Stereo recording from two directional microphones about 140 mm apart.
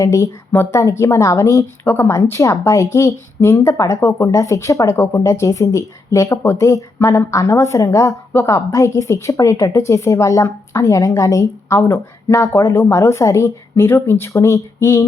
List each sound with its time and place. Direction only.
0.0 s a woman's voice: 20° left (ahead or behind)